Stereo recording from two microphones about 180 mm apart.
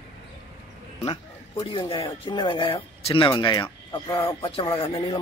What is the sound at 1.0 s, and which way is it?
Speech, 25° left (ahead or behind).